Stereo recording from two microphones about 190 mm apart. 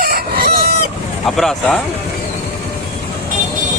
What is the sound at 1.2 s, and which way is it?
Speech, centre (ahead or behind).